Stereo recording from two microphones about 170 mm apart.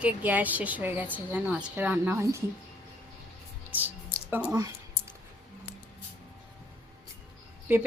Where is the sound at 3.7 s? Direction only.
10° right (ahead or behind).